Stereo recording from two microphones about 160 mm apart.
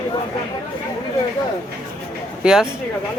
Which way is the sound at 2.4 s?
5° right (ahead or behind).